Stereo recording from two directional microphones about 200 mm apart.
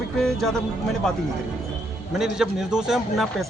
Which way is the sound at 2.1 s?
Centre (ahead or behind).